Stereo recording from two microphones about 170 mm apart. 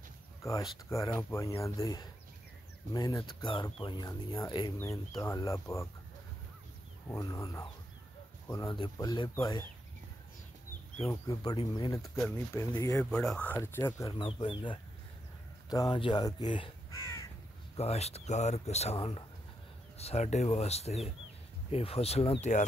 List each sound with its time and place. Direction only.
0.4 s speech: 20° left (ahead or behind)
7.1 s speech: 20° left (ahead or behind)
11.1 s speech: 20° left (ahead or behind)
13.1 s speech: 5° left (ahead or behind)
14.1 s speech: 30° left (ahead or behind)
17.7 s speech: 40° left (ahead or behind)